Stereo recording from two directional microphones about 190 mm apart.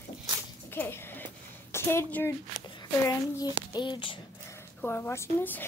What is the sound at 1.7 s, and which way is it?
A child's voice, 10° left (ahead or behind).